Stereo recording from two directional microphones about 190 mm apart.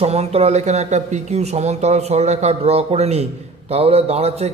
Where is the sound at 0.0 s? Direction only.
35° right (ahead or behind).